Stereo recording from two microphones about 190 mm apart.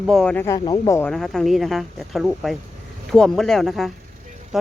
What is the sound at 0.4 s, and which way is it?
Speech, 20° left (ahead or behind).